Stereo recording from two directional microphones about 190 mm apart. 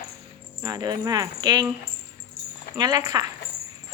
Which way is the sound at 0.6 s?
20° right (ahead or behind).